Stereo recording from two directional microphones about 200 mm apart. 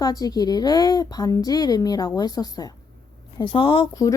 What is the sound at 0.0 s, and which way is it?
A woman's voice, 20° left (ahead or behind).